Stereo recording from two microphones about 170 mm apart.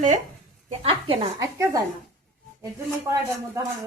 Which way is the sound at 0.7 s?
35° right (ahead or behind).